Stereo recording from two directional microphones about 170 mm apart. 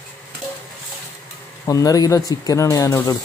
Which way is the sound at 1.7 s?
20° left (ahead or behind).